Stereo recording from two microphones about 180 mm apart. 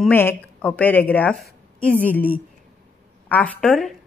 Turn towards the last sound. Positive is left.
turn(degrees=5)  # may be behind; listen again after turning